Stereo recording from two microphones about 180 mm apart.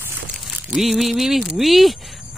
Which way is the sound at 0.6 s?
Centre (ahead or behind).